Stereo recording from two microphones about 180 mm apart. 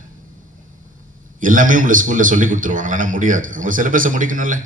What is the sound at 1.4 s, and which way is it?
A man's voice, 50° right (ahead or behind).